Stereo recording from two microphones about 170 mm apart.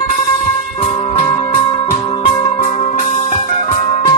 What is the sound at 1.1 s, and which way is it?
Music, 50° left (ahead or behind).